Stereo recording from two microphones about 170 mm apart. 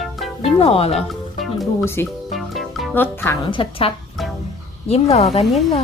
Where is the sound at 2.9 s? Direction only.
10° left (ahead or behind).